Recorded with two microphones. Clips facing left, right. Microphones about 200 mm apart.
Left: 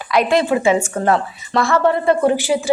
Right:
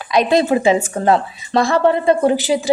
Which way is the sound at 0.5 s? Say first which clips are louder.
Right 1 dB; 30° right (ahead or behind).